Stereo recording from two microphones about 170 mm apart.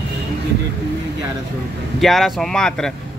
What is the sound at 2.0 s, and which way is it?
Speech, centre (ahead or behind).